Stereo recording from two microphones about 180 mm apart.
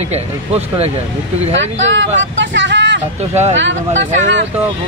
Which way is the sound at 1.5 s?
90° right.